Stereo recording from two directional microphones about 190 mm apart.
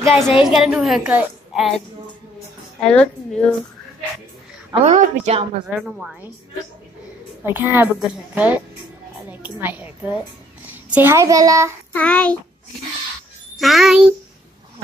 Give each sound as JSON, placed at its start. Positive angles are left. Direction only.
{"t": 0.0, "sound": "a woman's voice", "side_deg": 0}
{"t": 2.8, "sound": "a woman's voice", "side_deg": 5}
{"t": 4.8, "sound": "a woman's voice", "side_deg": -40}
{"t": 5.7, "sound": "a woman's voice", "side_deg": -5}
{"t": 7.4, "sound": "a woman's voice", "side_deg": -10}
{"t": 11.9, "sound": "child singing", "side_deg": 5}
{"t": 13.6, "sound": "a woman's voice", "side_deg": 0}